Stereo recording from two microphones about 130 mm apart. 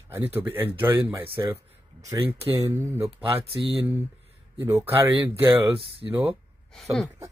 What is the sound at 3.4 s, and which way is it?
Speech, 45° right (ahead or behind).